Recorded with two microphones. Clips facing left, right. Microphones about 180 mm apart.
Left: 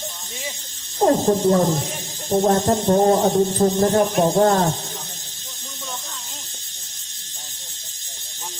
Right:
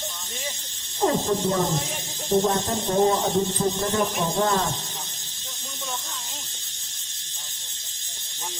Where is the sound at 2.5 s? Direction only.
45° left (ahead or behind).